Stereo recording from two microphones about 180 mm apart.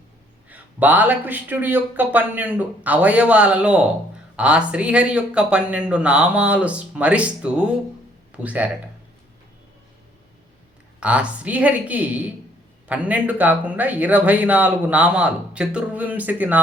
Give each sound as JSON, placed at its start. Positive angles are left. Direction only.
{"t": 0.5, "sound": "speech", "side_deg": -10}
{"t": 11.0, "sound": "speech", "side_deg": -5}